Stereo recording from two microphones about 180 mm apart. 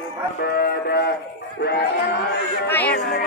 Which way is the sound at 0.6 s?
60° left (ahead or behind).